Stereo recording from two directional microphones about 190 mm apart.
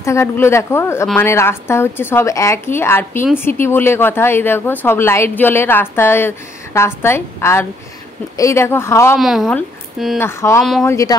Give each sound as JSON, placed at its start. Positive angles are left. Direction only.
{"t": 0.0, "sound": "a woman's voice", "side_deg": 15}
{"t": 9.1, "sound": "speech", "side_deg": 0}
{"t": 10.1, "sound": "a woman's voice", "side_deg": 15}
{"t": 10.6, "sound": "speech", "side_deg": 0}
{"t": 10.9, "sound": "a woman's voice", "side_deg": 15}